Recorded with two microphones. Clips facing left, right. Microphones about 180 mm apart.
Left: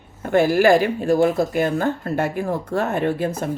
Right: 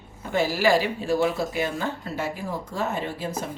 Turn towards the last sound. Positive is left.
turn(degrees=60)  # may be behind; listen again after turning